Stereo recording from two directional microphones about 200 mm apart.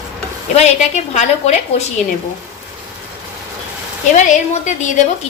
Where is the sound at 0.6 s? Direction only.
35° left (ahead or behind).